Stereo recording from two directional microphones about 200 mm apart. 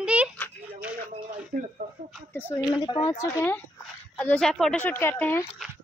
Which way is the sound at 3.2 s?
10° left (ahead or behind).